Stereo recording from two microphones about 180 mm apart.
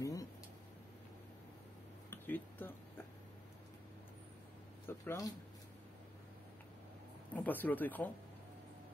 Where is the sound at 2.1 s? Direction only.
10° left (ahead or behind).